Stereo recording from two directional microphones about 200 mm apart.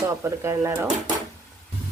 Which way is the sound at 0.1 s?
15° right (ahead or behind).